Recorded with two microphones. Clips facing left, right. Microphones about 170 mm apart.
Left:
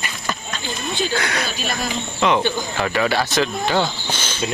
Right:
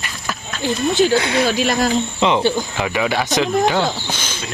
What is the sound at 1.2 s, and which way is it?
Speech, 25° right (ahead or behind).